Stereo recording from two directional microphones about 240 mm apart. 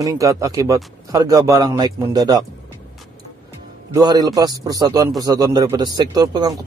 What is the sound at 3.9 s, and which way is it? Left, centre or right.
A man's voice, centre.